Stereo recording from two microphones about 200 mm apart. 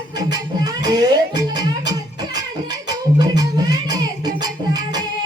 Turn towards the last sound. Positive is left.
turn(degrees=-20)  # may be behind; listen again after turning